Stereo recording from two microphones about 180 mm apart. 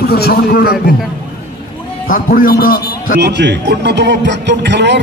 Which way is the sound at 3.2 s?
75° right (ahead or behind).